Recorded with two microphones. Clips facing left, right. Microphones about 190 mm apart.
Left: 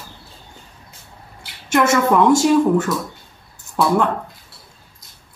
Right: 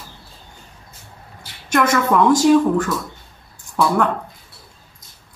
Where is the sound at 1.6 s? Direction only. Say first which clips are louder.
Left 2 dB; 25° left (ahead or behind).